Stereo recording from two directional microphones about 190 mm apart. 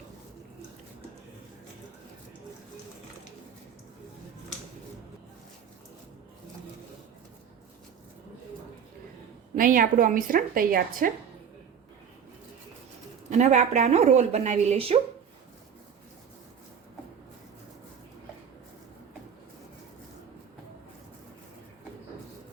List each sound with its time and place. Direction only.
9.6 s a woman's voice: 45° right (ahead or behind)
13.3 s a woman's voice: 35° right (ahead or behind)